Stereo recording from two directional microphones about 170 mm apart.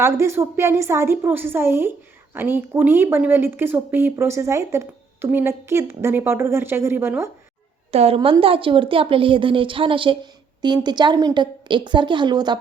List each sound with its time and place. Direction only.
0.0 s speech: 15° right (ahead or behind)
7.9 s a woman's voice: 35° right (ahead or behind)